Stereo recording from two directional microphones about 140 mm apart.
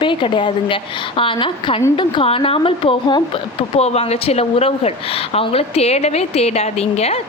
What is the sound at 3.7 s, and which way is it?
A woman's voice, 50° left (ahead or behind).